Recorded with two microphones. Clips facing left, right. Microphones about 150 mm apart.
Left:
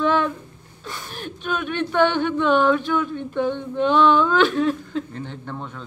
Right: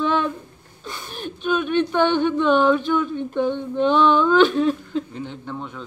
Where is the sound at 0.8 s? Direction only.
20° right (ahead or behind).